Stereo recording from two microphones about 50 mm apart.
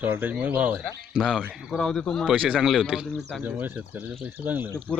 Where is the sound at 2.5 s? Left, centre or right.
Centre.